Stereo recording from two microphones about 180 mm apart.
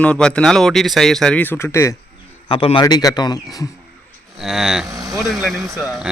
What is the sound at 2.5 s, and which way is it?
Speech, 30° left (ahead or behind).